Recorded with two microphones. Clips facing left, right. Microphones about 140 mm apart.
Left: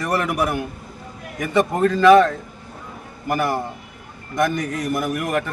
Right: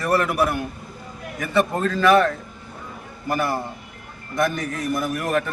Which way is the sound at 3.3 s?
15° left (ahead or behind).